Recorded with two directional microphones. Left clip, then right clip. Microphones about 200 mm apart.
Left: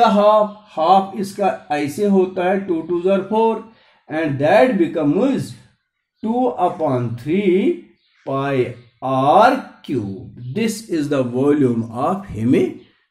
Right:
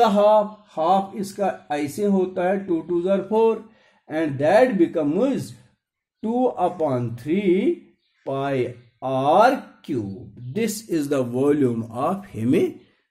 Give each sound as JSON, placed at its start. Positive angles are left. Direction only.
{"t": 0.0, "sound": "speech", "side_deg": -45}